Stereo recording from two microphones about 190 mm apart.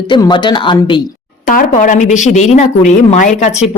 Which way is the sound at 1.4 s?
45° left (ahead or behind).